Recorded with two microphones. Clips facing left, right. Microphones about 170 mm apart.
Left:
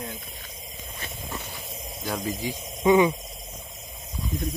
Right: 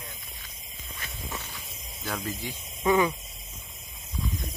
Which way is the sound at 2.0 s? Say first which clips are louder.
Left 4 dB; 15° left (ahead or behind).